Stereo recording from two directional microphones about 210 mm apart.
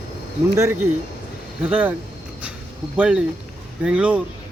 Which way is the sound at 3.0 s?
5° right (ahead or behind).